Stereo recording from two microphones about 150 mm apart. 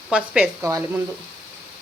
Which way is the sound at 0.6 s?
20° right (ahead or behind).